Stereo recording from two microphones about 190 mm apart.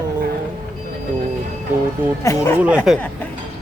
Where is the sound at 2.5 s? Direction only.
5° right (ahead or behind).